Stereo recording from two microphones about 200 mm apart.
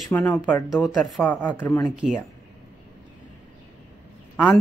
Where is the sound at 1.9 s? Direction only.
Centre (ahead or behind).